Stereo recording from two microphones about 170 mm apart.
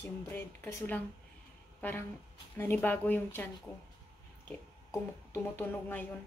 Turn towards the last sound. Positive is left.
turn(degrees=10)  # may be behind; listen again after turning